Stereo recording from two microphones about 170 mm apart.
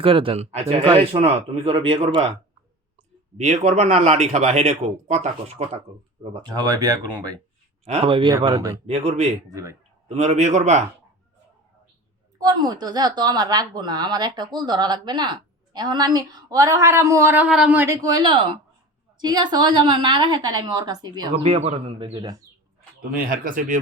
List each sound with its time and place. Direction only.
0.0 s a man's voice: 35° right (ahead or behind)
0.8 s a woman's voice: 25° right (ahead or behind)
3.3 s a man's voice: 40° right (ahead or behind)
6.3 s a woman's voice: 25° right (ahead or behind)
7.9 s a man's voice: 35° right (ahead or behind)
9.5 s a woman's voice: 20° right (ahead or behind)
10.2 s speech: 45° right (ahead or behind)
12.4 s a woman's voice: 25° right (ahead or behind)
21.3 s a man's voice: 40° right (ahead or behind)
23.1 s speech: 55° right (ahead or behind)